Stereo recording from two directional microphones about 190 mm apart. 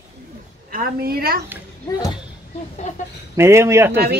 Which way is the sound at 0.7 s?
50° right (ahead or behind).